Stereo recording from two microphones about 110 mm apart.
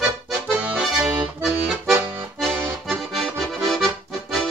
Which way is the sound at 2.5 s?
15° right (ahead or behind).